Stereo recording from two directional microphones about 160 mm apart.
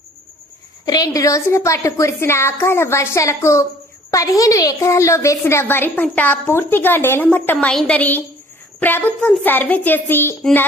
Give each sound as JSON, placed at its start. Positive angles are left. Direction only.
{"t": 0.9, "sound": "a woman's voice", "side_deg": 25}